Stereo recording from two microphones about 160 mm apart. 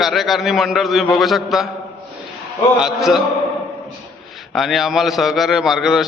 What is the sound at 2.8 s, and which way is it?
Speech, centre (ahead or behind).